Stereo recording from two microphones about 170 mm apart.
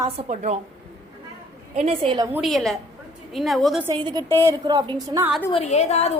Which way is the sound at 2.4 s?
Centre (ahead or behind).